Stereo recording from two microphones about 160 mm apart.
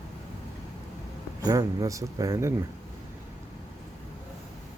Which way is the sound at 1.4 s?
20° right (ahead or behind).